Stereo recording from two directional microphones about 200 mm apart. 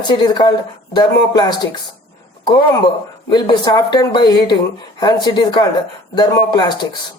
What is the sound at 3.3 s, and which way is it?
Speech, 20° left (ahead or behind).